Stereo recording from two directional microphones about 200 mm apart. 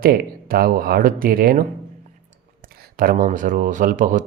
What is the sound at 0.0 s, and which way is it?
Speech, 45° right (ahead or behind).